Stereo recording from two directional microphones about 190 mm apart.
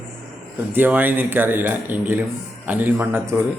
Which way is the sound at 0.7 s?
10° right (ahead or behind).